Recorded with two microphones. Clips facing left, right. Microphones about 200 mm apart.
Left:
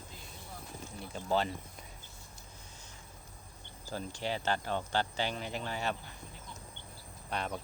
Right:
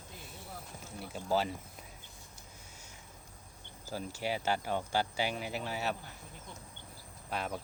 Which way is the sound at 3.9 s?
5° right (ahead or behind).